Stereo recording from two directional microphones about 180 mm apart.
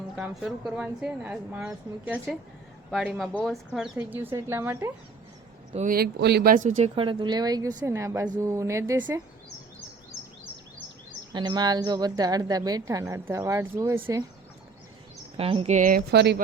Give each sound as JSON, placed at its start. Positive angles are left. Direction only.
{"t": 0.2, "sound": "speech", "side_deg": 0}
{"t": 5.7, "sound": "speech", "side_deg": -50}
{"t": 11.3, "sound": "a woman's voice", "side_deg": -25}
{"t": 15.4, "sound": "speech", "side_deg": -30}
{"t": 16.1, "sound": "speech", "side_deg": -65}